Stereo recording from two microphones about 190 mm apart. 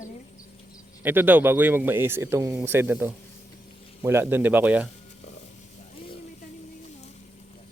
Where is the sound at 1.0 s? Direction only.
10° right (ahead or behind).